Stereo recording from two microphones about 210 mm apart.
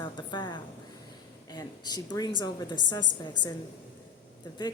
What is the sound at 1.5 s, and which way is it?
A woman's voice, 20° left (ahead or behind).